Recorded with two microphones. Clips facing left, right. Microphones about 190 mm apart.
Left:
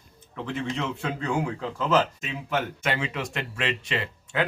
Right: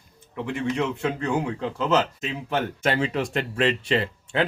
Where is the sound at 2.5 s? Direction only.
35° right (ahead or behind).